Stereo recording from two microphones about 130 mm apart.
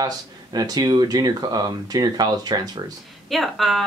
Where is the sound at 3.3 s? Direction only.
Centre (ahead or behind).